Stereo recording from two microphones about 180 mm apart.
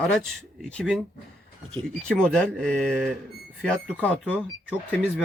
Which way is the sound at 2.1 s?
5° left (ahead or behind).